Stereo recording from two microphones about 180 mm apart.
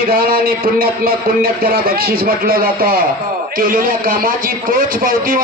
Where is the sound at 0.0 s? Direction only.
55° right (ahead or behind).